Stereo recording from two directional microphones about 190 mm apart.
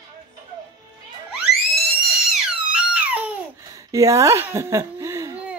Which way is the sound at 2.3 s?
5° right (ahead or behind).